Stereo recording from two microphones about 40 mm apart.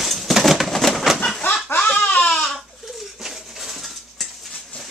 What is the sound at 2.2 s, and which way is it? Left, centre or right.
Baby cry, left.